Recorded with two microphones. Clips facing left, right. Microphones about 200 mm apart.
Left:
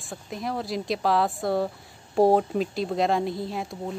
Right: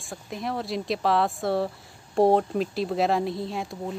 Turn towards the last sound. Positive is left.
turn(degrees=0)  # may be behind; listen again after turning